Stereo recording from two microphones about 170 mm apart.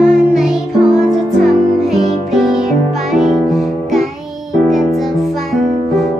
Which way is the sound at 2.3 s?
Centre (ahead or behind).